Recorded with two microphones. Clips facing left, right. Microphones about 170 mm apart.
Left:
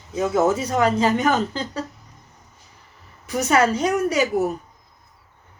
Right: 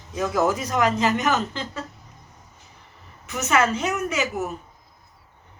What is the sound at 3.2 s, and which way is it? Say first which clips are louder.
Speech: left 3 dB; 35° left (ahead or behind).